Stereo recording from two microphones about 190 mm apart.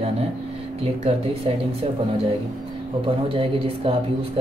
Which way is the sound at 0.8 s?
30° right (ahead or behind).